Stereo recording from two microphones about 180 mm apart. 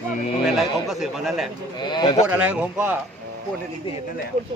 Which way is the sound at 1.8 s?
25° left (ahead or behind).